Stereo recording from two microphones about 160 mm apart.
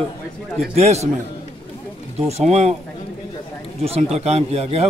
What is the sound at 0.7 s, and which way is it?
Speech, 40° right (ahead or behind).